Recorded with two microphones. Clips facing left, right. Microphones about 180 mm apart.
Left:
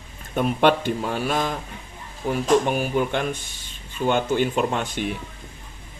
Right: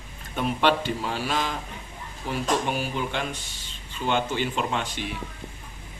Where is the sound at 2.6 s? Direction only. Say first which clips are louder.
Left 6 dB; 50° left (ahead or behind).